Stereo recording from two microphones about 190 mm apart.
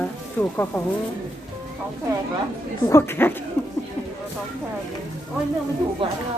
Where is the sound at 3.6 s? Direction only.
5° left (ahead or behind).